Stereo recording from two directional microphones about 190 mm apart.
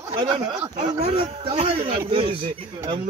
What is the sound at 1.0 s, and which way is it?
Speech, 30° right (ahead or behind).